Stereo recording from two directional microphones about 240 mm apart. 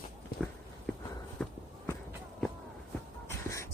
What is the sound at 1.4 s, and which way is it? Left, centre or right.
Walk, centre.